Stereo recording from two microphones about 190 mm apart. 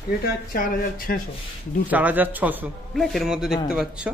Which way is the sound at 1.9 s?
10° right (ahead or behind).